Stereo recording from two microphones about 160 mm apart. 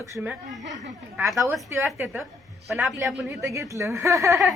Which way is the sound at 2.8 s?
Centre (ahead or behind).